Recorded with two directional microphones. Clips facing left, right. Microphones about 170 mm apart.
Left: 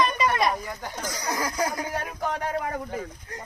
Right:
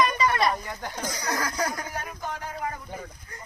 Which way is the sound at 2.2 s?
70° left (ahead or behind).